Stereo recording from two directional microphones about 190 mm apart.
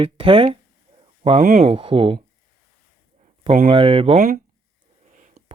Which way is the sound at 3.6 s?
30° right (ahead or behind).